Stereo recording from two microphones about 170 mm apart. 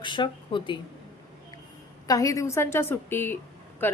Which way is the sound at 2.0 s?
20° left (ahead or behind).